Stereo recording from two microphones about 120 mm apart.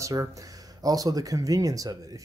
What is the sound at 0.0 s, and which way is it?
Speech, 25° right (ahead or behind).